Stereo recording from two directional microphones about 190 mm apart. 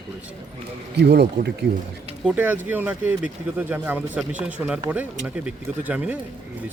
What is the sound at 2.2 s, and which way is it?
Speech, 10° right (ahead or behind).